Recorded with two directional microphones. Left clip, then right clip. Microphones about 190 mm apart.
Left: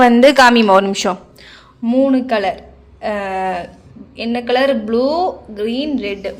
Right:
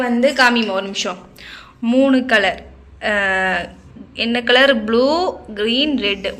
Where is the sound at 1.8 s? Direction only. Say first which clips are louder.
Even; 5° left (ahead or behind).